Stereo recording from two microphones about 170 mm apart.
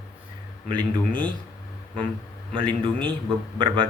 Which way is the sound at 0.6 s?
30° right (ahead or behind).